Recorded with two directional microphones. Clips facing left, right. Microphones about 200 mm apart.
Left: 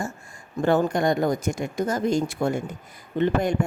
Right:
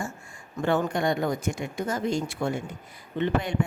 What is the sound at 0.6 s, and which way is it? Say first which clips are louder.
A woman's voice: left 4 dB; 40° left (ahead or behind).